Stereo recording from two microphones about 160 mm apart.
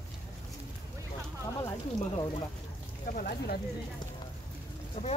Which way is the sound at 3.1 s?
65° left (ahead or behind).